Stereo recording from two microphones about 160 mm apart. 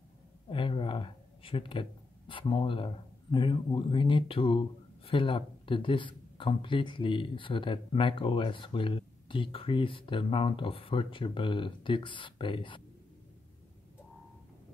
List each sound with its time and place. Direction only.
0.5 s speech: 35° left (ahead or behind)